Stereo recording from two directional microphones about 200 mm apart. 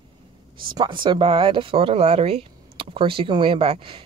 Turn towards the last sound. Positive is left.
turn(degrees=-25)  # may be behind; listen again after turning